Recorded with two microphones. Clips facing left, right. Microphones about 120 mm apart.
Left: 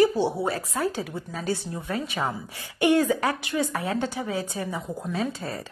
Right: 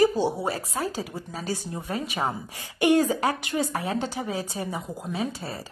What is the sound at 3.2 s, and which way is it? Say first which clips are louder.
Speech: even; 35° right (ahead or behind).